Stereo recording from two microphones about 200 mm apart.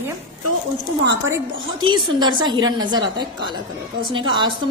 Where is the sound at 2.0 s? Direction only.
20° right (ahead or behind).